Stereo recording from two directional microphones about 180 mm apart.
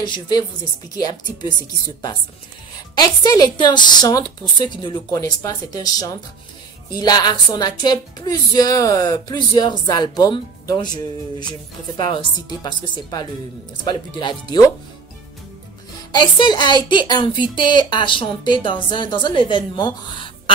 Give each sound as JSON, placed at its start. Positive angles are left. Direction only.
{"t": 0.0, "sound": "a woman's voice", "side_deg": 25}
{"t": 3.0, "sound": "a woman's voice", "side_deg": 20}
{"t": 16.1, "sound": "a woman's voice", "side_deg": 25}